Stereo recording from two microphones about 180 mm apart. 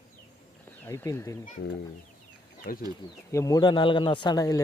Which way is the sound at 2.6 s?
55° left (ahead or behind).